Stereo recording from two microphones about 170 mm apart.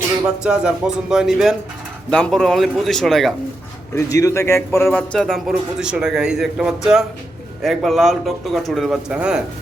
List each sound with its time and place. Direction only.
0.4 s a man's voice: 5° right (ahead or behind)
3.9 s a man's voice: 20° left (ahead or behind); by 9.4 s 5° right (ahead or behind)